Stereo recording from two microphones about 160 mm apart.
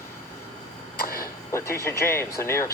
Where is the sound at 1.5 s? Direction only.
15° left (ahead or behind).